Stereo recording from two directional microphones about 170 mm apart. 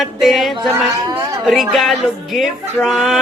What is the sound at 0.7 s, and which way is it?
Speech, 20° right (ahead or behind).